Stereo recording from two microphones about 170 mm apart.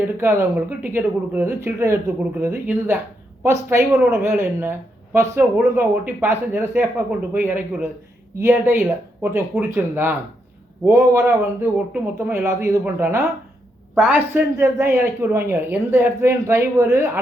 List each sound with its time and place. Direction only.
0.2 s a man's voice: 15° right (ahead or behind)